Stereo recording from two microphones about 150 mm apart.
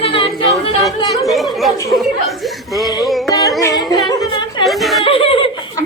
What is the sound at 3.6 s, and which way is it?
Music, 20° left (ahead or behind).